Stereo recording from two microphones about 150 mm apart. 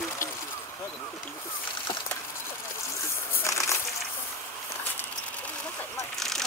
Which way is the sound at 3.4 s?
20° left (ahead or behind).